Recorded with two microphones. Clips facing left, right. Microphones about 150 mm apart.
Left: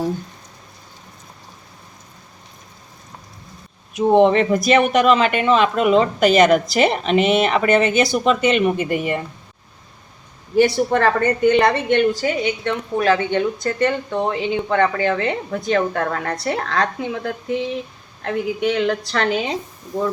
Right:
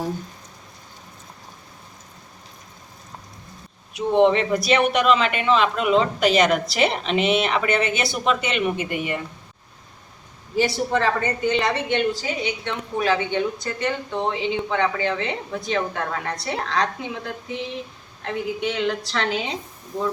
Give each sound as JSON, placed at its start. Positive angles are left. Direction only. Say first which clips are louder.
{"t": 3.9, "sound": "a woman's voice", "louder": "left 4 dB", "side_deg": 45}
{"t": 10.6, "sound": "a woman's voice", "louder": "left 6 dB", "side_deg": 55}